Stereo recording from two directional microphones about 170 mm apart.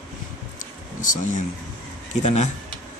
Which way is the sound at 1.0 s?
50° left (ahead or behind).